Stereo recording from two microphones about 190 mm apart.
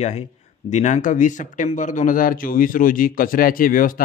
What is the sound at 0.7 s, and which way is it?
A man's voice, 40° left (ahead or behind).